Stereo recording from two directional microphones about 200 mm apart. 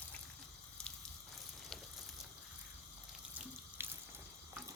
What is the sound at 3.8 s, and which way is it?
Water, 10° right (ahead or behind).